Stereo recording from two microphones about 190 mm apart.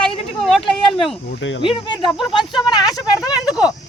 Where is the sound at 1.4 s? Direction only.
80° left.